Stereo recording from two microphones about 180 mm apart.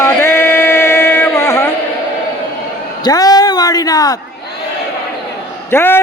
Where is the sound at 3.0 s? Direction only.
20° left (ahead or behind).